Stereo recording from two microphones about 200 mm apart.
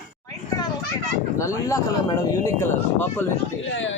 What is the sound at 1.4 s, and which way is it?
Speech, 15° left (ahead or behind).